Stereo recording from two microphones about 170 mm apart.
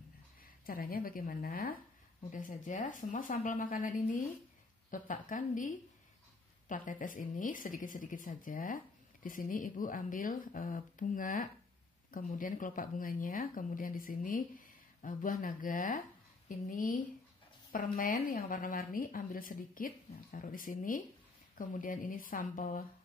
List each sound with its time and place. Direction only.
0.7 s a woman's voice: 60° left (ahead or behind)